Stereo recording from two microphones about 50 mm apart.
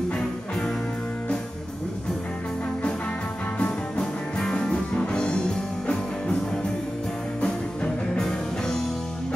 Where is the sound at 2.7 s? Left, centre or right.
Centre.